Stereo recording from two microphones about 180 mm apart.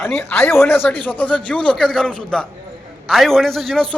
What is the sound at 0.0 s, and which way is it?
A man's voice, 5° left (ahead or behind).